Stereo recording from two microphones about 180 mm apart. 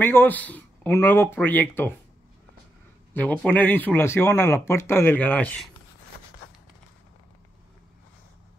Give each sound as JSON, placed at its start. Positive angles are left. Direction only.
{"t": 0.0, "sound": "speech", "side_deg": 10}
{"t": 3.2, "sound": "speech", "side_deg": 10}